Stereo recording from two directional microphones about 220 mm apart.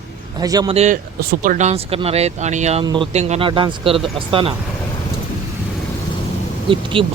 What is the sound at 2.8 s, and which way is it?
Speech, 20° right (ahead or behind).